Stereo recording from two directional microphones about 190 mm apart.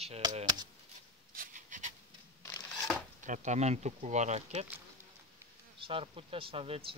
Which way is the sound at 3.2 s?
40° right (ahead or behind).